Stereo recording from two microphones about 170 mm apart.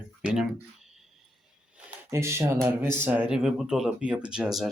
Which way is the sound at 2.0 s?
15° right (ahead or behind).